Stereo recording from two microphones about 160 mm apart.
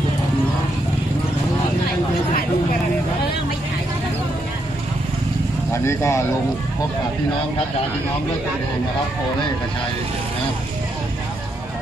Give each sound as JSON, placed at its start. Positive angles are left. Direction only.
{"t": 5.7, "sound": "speech", "side_deg": 15}